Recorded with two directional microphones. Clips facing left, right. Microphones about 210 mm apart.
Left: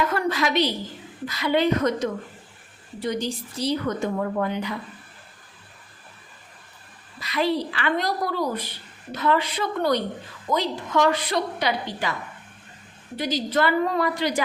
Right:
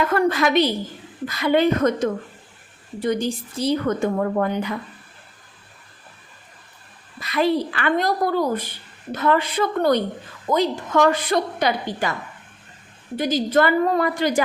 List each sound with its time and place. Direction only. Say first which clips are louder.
0.1 s a woman's voice: right 5 dB; 50° right (ahead or behind)
7.2 s a woman's voice: right 4 dB; 50° right (ahead or behind)
13.1 s a woman's voice: right 5 dB; 50° right (ahead or behind)